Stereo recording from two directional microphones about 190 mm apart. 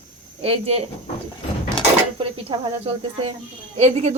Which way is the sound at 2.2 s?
25° right (ahead or behind).